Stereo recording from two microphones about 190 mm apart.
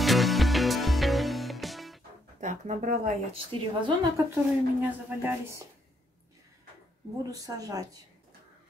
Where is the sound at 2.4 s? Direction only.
40° right (ahead or behind).